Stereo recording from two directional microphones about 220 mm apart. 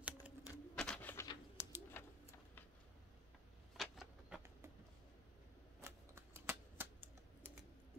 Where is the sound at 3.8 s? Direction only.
Centre (ahead or behind).